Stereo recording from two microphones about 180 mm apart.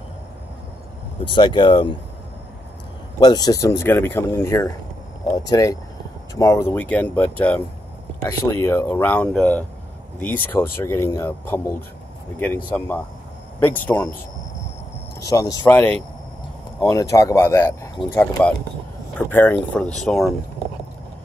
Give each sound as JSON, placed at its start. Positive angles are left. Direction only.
{"t": 1.2, "sound": "speech", "side_deg": 25}
{"t": 3.2, "sound": "speech", "side_deg": 20}
{"t": 15.1, "sound": "speech", "side_deg": 20}